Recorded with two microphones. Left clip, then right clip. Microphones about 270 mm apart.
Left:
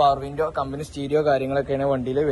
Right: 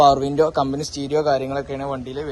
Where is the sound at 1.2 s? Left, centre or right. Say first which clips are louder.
Left 1 dB; right.